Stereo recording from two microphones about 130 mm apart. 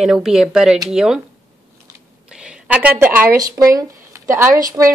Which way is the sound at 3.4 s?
30° right (ahead or behind).